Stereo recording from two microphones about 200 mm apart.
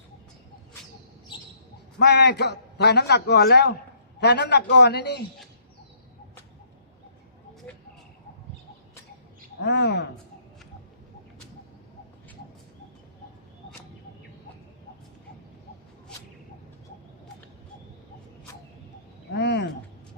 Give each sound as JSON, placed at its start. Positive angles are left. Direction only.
{"t": 2.0, "sound": "a man's voice", "side_deg": 60}
{"t": 9.6, "sound": "a man's voice", "side_deg": 55}
{"t": 19.3, "sound": "a sound", "side_deg": 55}